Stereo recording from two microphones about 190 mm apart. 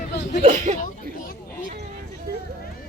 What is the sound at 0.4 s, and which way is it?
Speech, 40° right (ahead or behind).